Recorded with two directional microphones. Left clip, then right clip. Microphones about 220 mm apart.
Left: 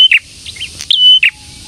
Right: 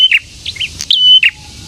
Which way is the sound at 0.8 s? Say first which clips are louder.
Even; centre (ahead or behind).